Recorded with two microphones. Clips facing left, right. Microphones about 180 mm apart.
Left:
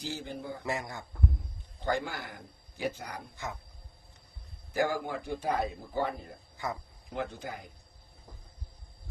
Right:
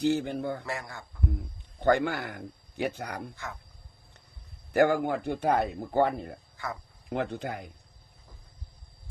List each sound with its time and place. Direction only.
0.0 s speech: 65° right (ahead or behind)
0.6 s speech: 20° left (ahead or behind)
1.8 s speech: 65° right (ahead or behind)
3.3 s speech: 20° left (ahead or behind)
4.7 s speech: 65° right (ahead or behind)
6.6 s speech: 20° left (ahead or behind)
7.1 s speech: 65° right (ahead or behind)